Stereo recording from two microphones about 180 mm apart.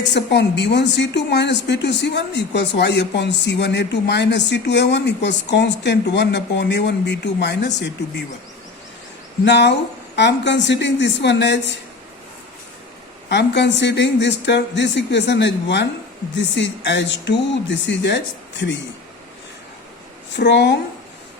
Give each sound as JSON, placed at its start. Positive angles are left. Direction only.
{"t": 0.0, "sound": "a woman's voice", "side_deg": 75}
{"t": 9.4, "sound": "a woman's voice", "side_deg": 70}
{"t": 13.2, "sound": "a woman's voice", "side_deg": 70}
{"t": 20.3, "sound": "a woman's voice", "side_deg": 75}